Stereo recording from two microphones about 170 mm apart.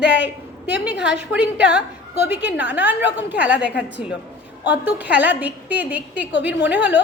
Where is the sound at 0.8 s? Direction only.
5° right (ahead or behind).